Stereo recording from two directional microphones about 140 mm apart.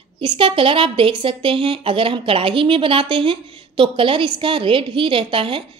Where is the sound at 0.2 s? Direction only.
40° right (ahead or behind).